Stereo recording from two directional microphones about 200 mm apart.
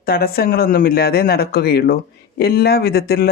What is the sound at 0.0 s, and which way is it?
Speech, 50° left (ahead or behind).